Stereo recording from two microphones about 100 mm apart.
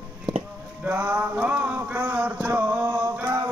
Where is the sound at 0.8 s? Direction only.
15° right (ahead or behind).